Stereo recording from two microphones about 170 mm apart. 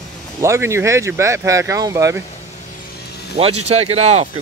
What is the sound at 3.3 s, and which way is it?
Speech, 40° right (ahead or behind).